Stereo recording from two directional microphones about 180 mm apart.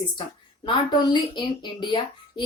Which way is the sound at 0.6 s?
25° left (ahead or behind).